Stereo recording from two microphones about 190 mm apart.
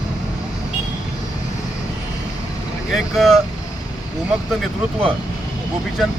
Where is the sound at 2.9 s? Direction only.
Centre (ahead or behind).